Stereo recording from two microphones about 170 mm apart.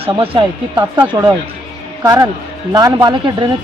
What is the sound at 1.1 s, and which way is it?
Speech, 25° right (ahead or behind).